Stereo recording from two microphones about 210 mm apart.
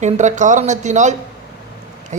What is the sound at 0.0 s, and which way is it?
Speech, 35° right (ahead or behind).